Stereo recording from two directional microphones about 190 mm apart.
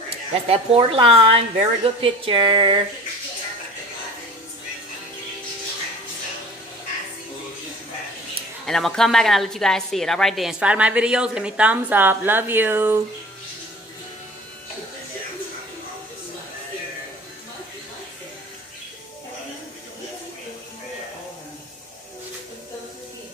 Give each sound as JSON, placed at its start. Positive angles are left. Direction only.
{"t": 0.3, "sound": "a woman's voice", "side_deg": -30}
{"t": 8.6, "sound": "a woman's voice", "side_deg": 0}